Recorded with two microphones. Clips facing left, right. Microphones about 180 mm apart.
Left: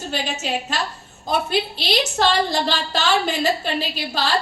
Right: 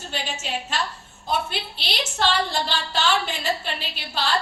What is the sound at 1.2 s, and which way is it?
A woman's voice, 40° left (ahead or behind).